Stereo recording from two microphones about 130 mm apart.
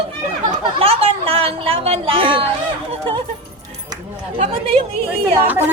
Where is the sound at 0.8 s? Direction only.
50° right (ahead or behind).